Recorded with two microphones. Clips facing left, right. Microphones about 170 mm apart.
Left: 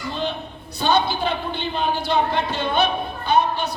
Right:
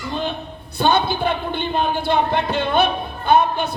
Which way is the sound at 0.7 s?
55° right (ahead or behind).